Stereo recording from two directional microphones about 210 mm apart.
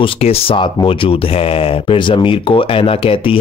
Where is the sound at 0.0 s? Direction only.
25° left (ahead or behind).